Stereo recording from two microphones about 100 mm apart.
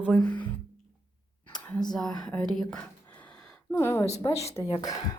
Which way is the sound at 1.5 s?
5° left (ahead or behind).